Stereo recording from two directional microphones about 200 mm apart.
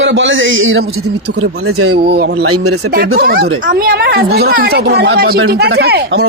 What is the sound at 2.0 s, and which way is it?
A woman's voice, 50° right (ahead or behind).